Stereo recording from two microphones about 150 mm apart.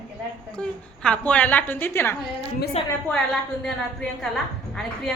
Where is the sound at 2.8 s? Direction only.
40° left (ahead or behind).